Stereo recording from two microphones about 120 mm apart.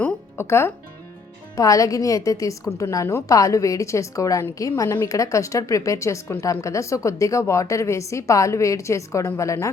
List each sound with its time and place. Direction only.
0.0 s music: 20° left (ahead or behind)
1.5 s a woman's voice: 30° left (ahead or behind)